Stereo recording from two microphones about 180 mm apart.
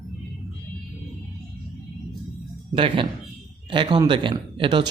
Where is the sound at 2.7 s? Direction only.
30° right (ahead or behind).